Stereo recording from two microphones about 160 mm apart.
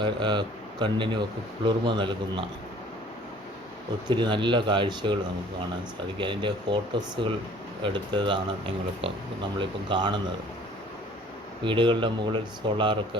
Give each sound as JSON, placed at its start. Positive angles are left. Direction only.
{"t": 0.0, "sound": "a man's voice", "side_deg": -30}
{"t": 4.1, "sound": "speech", "side_deg": -30}
{"t": 6.1, "sound": "speech", "side_deg": -30}
{"t": 11.6, "sound": "speech", "side_deg": -30}